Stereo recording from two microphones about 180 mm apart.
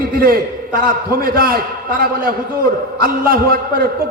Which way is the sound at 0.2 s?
55° right (ahead or behind).